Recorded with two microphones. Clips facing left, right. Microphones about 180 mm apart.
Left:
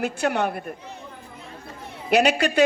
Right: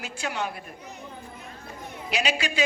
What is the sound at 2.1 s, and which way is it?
Speech, 60° left (ahead or behind).